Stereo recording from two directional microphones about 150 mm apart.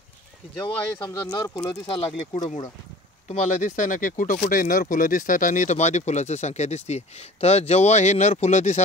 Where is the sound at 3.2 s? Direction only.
55° left (ahead or behind).